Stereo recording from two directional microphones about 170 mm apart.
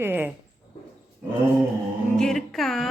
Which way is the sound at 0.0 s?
10° right (ahead or behind).